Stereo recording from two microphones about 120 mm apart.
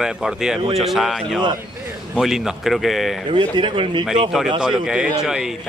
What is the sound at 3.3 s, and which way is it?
Speech, 40° right (ahead or behind).